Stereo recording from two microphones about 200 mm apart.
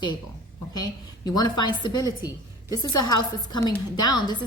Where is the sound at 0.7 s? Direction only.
20° left (ahead or behind).